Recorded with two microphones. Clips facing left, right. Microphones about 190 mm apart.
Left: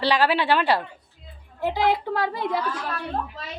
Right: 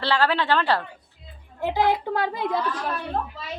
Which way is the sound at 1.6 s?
20° right (ahead or behind).